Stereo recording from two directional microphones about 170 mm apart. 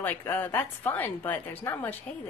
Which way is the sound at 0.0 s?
10° left (ahead or behind).